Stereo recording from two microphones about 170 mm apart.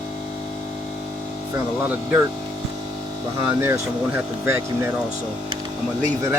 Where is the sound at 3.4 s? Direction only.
15° right (ahead or behind).